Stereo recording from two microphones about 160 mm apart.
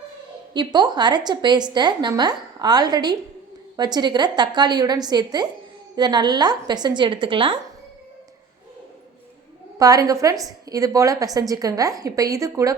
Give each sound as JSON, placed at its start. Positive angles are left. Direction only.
{"t": 0.5, "sound": "a woman's voice", "side_deg": -25}
{"t": 9.7, "sound": "a woman's voice", "side_deg": -20}